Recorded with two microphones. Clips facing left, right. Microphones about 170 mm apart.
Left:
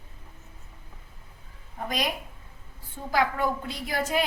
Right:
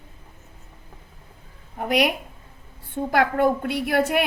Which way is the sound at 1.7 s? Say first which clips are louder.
Right 9 dB; 70° right (ahead or behind).